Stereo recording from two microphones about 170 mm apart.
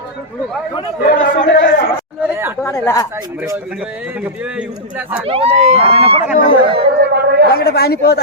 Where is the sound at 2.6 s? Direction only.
15° left (ahead or behind).